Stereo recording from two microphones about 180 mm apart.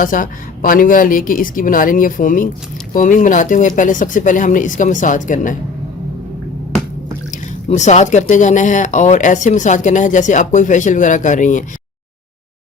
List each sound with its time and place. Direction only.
0.0 s speech: 50° left (ahead or behind)
7.3 s speech: 40° left (ahead or behind)